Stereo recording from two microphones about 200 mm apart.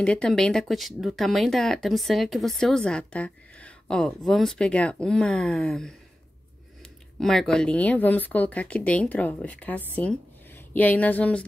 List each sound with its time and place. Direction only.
0.0 s speech: 5° left (ahead or behind)
7.2 s speech: 5° left (ahead or behind)